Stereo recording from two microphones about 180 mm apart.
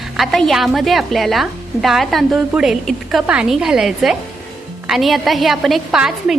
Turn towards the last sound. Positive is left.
turn(degrees=-5)  # may be behind; listen again after turning